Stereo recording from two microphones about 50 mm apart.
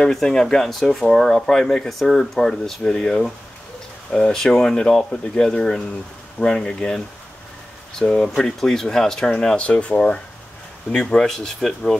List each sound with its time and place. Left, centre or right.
0.1 s speech: centre
8.0 s speech: left
8.5 s speech: centre